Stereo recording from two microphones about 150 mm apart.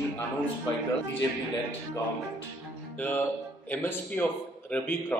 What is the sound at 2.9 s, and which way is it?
A man's voice, 10° left (ahead or behind).